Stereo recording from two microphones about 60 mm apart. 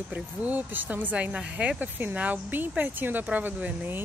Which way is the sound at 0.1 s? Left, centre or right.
Right.